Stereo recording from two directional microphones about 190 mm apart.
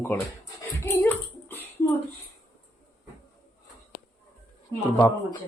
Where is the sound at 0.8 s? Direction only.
10° left (ahead or behind).